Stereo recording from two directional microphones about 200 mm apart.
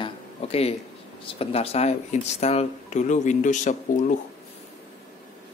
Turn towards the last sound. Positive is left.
turn(degrees=40)  # may be behind; listen again after turning